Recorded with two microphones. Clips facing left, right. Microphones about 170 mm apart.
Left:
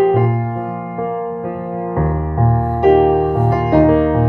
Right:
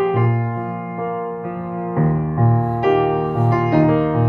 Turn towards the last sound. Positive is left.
turn(degrees=45)  # may be behind; listen again after turning